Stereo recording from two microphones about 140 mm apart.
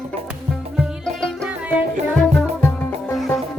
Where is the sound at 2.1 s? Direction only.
5° left (ahead or behind).